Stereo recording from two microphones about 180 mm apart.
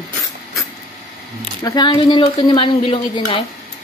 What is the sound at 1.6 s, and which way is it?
A woman's voice, 25° left (ahead or behind).